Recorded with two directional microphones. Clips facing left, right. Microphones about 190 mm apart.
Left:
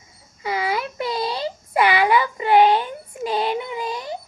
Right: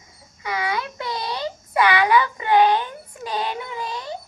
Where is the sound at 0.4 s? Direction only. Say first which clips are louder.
Left 2 dB; 25° left (ahead or behind).